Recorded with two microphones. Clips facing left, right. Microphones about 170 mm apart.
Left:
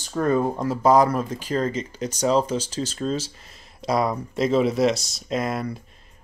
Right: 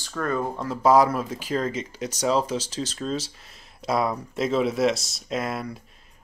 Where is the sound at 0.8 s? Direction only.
5° right (ahead or behind).